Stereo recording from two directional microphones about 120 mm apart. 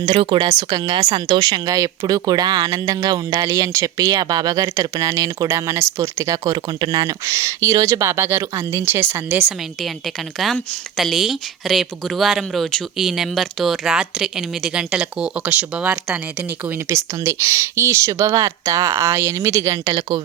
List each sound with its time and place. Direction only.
0.0 s speech: 45° right (ahead or behind); by 9.5 s 15° right (ahead or behind)
10.3 s speech: centre (ahead or behind)
16.9 s speech: 25° right (ahead or behind)